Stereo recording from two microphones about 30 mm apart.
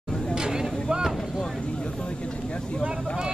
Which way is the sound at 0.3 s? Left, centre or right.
Centre.